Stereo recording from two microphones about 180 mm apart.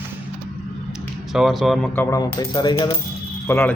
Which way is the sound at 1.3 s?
Centre (ahead or behind).